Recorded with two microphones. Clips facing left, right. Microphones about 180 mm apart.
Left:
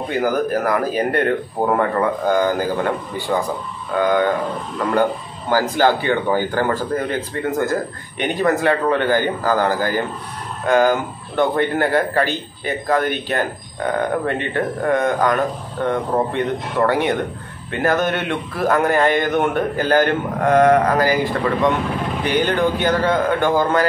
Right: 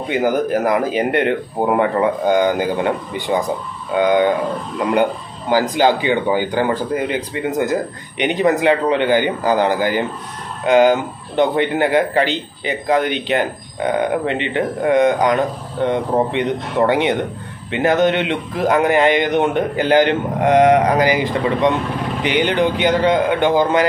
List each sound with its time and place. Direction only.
0.1 s speech: 20° right (ahead or behind)
5.5 s a man's voice: 15° right (ahead or behind)